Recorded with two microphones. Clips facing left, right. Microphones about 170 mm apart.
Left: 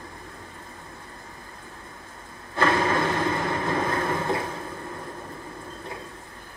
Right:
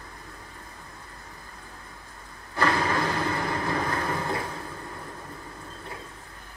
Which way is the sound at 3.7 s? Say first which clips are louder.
Left 3 dB; 25° left (ahead or behind).